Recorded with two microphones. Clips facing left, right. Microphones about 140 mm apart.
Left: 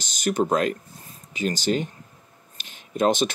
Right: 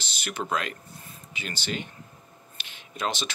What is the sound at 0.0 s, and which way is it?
Speech, 45° left (ahead or behind).